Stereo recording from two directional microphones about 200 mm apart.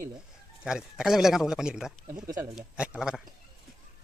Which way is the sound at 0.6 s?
5° right (ahead or behind).